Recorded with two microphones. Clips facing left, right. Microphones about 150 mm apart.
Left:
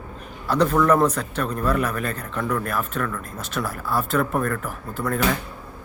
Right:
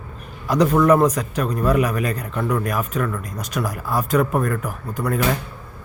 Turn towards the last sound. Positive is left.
turn(degrees=-15)  # may be behind; listen again after turning